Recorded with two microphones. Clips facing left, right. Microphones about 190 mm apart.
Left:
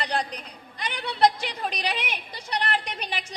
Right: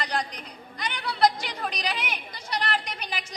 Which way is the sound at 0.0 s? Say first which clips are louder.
Left 2 dB; 30° left (ahead or behind).